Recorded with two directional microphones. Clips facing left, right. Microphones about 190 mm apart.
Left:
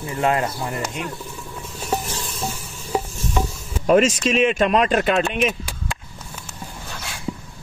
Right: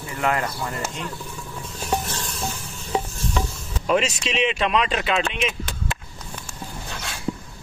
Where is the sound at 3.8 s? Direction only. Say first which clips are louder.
Left 6 dB; 45° left (ahead or behind).